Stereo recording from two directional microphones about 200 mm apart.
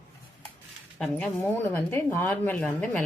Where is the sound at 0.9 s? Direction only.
5° left (ahead or behind).